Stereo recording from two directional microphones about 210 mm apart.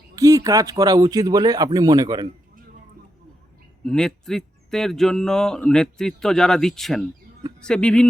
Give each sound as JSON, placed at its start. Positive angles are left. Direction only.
{"t": 0.2, "sound": "speech", "side_deg": -15}
{"t": 3.8, "sound": "speech", "side_deg": 5}